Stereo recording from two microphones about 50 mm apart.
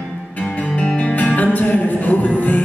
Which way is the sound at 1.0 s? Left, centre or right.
Left.